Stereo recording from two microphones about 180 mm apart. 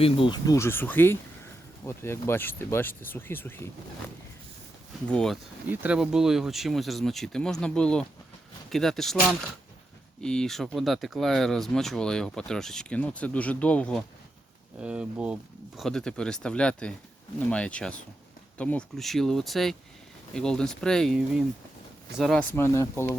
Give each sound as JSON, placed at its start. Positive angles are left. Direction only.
{"t": 0.0, "sound": "speech", "side_deg": 25}
{"t": 5.0, "sound": "speech", "side_deg": 5}
{"t": 5.6, "sound": "speech", "side_deg": -10}
{"t": 10.2, "sound": "speech", "side_deg": 5}
{"t": 14.8, "sound": "speech", "side_deg": -5}
{"t": 22.5, "sound": "speech", "side_deg": 15}